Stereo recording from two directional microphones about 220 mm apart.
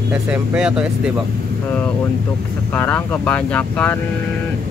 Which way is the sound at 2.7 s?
10° left (ahead or behind).